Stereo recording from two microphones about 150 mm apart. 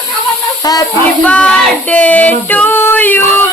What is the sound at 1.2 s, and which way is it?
Female singing, 10° left (ahead or behind).